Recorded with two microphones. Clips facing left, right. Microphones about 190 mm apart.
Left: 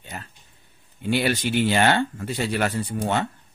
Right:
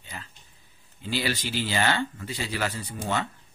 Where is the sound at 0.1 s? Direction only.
45° left (ahead or behind).